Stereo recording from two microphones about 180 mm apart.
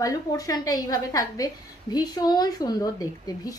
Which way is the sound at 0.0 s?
20° left (ahead or behind).